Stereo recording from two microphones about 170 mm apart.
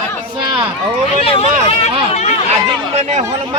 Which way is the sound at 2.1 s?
40° left (ahead or behind).